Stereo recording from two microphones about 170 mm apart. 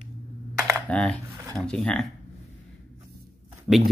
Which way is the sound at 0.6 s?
15° right (ahead or behind).